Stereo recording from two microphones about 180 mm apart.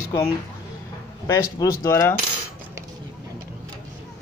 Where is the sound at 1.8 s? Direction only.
15° left (ahead or behind).